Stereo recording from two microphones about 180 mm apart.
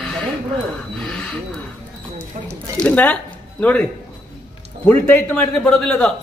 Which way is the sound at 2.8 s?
10° left (ahead or behind).